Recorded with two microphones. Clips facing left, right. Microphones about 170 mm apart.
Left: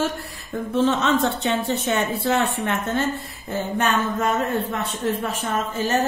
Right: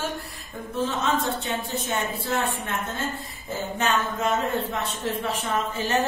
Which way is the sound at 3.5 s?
55° left (ahead or behind).